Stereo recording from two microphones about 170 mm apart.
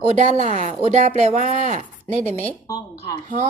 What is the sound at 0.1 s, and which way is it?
Speech, 45° right (ahead or behind).